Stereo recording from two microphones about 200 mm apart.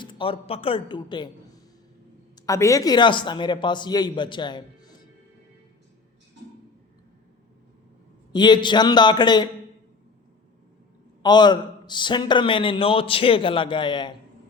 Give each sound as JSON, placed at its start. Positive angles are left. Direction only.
{"t": 0.0, "sound": "a man's voice", "side_deg": 25}
{"t": 2.3, "sound": "a man's voice", "side_deg": 15}
{"t": 8.3, "sound": "a man's voice", "side_deg": 20}
{"t": 11.2, "sound": "a man's voice", "side_deg": 20}